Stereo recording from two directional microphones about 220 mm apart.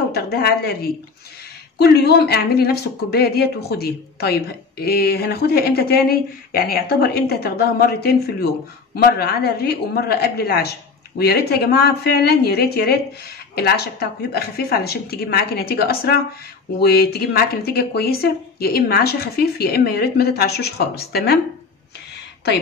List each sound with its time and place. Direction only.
0.1 s speech: 45° left (ahead or behind)